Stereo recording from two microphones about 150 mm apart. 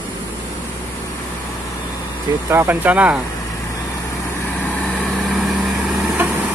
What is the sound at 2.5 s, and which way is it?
Speech, 15° right (ahead or behind).